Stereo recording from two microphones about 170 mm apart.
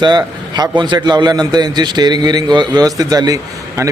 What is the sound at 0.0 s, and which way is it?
A man's voice, 25° right (ahead or behind).